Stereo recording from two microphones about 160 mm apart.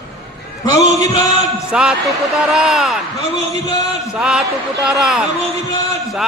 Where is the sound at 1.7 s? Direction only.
5° right (ahead or behind).